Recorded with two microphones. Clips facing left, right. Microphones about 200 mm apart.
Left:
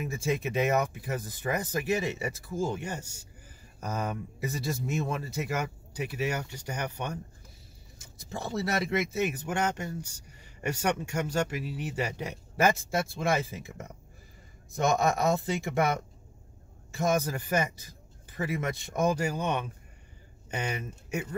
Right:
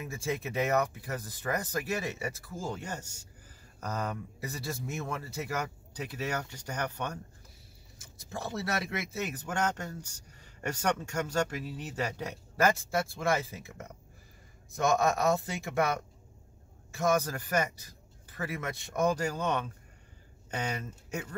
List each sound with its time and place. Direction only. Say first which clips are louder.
0.0 s speech: left 4 dB; 20° left (ahead or behind)
8.3 s speech: left 3 dB; 20° left (ahead or behind)
15.2 s speech: left 2 dB; 20° left (ahead or behind)
16.9 s speech: left 1 dB; 20° left (ahead or behind)